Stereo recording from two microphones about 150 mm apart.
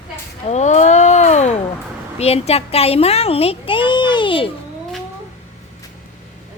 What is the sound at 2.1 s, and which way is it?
A child's voice, 45° left (ahead or behind).